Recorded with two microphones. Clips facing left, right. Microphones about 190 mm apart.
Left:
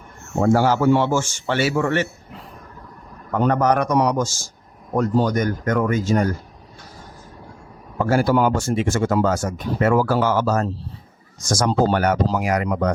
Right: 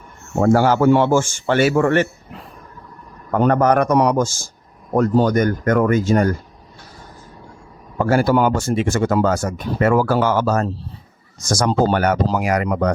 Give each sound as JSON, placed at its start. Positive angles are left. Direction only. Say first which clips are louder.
{"t": 0.4, "sound": "a man's voice", "louder": "right 3 dB", "side_deg": -60}
{"t": 3.3, "sound": "speech", "louder": "right 3 dB", "side_deg": -55}
{"t": 8.1, "sound": "speech", "louder": "right 2 dB", "side_deg": -65}